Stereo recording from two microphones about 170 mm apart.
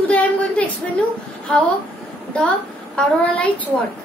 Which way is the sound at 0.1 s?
10° left (ahead or behind).